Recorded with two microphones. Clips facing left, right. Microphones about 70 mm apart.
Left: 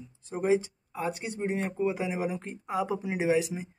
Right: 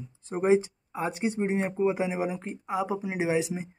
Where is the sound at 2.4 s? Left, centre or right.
Centre.